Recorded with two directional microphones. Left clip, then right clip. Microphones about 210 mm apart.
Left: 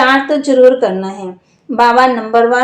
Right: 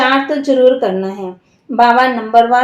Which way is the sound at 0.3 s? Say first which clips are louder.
Left 2 dB; 25° left (ahead or behind).